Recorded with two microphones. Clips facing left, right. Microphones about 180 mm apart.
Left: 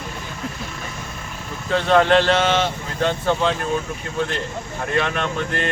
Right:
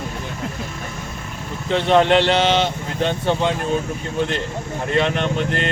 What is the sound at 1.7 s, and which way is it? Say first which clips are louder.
Speech: right 1 dB; 20° right (ahead or behind).